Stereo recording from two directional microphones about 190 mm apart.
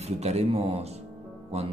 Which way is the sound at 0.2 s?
35° right (ahead or behind).